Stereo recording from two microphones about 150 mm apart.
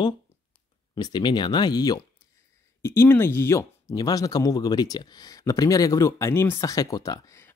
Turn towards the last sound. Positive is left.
turn(degrees=20)  # may be behind; listen again after turning